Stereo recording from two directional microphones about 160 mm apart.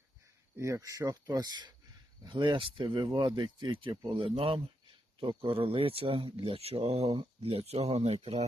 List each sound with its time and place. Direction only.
0.5 s speech: 20° right (ahead or behind); by 8.4 s 40° right (ahead or behind)